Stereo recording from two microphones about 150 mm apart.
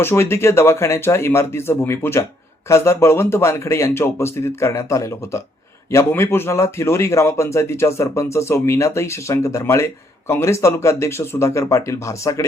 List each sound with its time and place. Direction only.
0.0 s speech: 15° left (ahead or behind)